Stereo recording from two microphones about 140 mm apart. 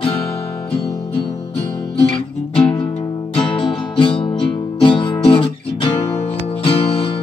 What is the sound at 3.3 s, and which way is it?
Music, 40° left (ahead or behind).